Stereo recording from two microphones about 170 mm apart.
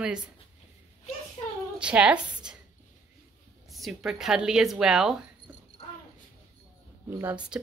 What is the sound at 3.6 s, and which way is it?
Speech, centre (ahead or behind).